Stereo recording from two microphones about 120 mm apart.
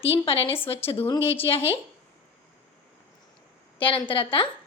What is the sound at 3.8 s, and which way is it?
Speech, 45° left (ahead or behind).